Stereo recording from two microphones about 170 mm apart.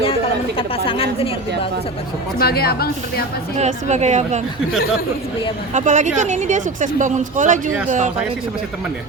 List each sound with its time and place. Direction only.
0.0 s chatter: 35° left (ahead or behind)
0.9 s a woman's voice: 35° left (ahead or behind)
2.4 s a woman's voice: 65° left (ahead or behind)
3.6 s speech: 45° right (ahead or behind)
5.7 s speech: 45° right (ahead or behind)